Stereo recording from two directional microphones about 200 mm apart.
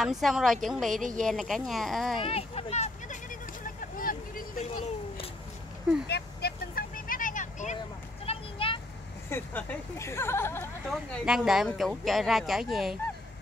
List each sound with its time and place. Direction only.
0.0 s speech: centre (ahead or behind)
2.2 s speech: 30° left (ahead or behind)
3.8 s vehicle: 45° left (ahead or behind)
6.0 s vehicle: 55° left (ahead or behind); by 7.7 s 40° left (ahead or behind)
8.3 s a sound: 25° left (ahead or behind)
9.3 s speech: 10° left (ahead or behind)
10.9 s speech: centre (ahead or behind)